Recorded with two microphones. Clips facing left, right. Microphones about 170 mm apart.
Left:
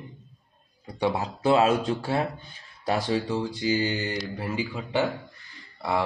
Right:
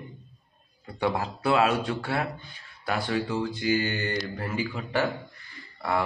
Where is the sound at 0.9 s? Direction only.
15° left (ahead or behind).